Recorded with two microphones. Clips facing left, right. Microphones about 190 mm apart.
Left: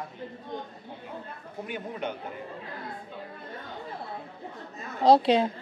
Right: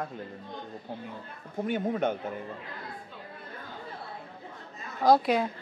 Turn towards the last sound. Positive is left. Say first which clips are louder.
# left 3 dB
turn(degrees=25)  # may be behind; listen again after turning